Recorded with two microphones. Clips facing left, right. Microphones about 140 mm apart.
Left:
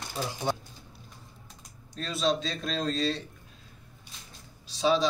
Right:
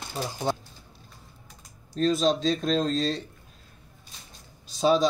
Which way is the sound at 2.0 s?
40° right (ahead or behind).